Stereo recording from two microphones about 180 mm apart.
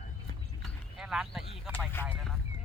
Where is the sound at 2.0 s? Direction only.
10° left (ahead or behind).